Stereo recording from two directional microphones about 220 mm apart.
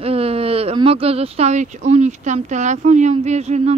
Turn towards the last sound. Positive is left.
turn(degrees=-30)  # may be behind; listen again after turning